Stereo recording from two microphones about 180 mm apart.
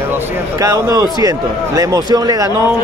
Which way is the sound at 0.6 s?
20° right (ahead or behind).